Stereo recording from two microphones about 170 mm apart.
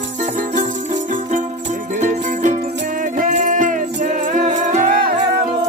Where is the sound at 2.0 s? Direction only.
45° right (ahead or behind).